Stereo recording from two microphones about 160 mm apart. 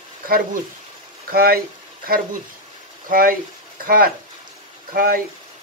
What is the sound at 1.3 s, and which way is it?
Speech, 70° right (ahead or behind).